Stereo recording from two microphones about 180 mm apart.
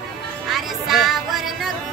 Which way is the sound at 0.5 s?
Centre (ahead or behind).